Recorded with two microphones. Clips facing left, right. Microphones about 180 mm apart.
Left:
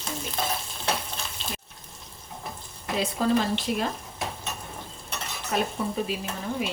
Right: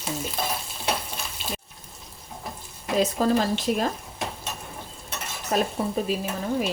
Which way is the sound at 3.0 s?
40° right (ahead or behind).